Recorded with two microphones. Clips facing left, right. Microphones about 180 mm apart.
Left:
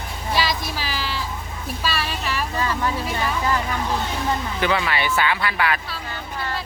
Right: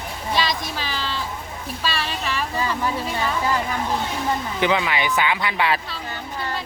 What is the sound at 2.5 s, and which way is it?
Speech, 15° right (ahead or behind).